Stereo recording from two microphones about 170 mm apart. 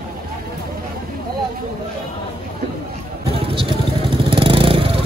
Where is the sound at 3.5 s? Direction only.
30° right (ahead or behind).